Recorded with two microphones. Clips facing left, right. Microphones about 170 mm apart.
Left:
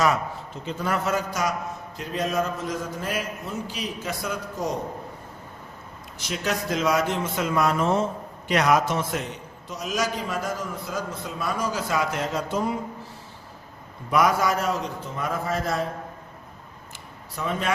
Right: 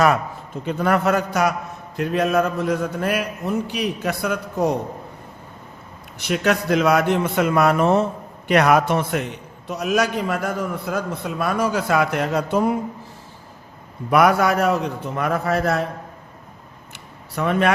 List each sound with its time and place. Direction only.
0.6 s a man's voice: 60° right (ahead or behind)
6.1 s a man's voice: 60° right (ahead or behind)
14.1 s a man's voice: 65° right (ahead or behind)
17.3 s a man's voice: 65° right (ahead or behind)